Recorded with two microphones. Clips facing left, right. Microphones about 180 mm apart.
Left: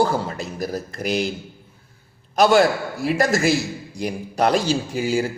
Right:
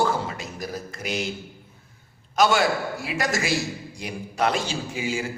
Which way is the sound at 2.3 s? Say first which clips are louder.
Left 5 dB; 40° left (ahead or behind).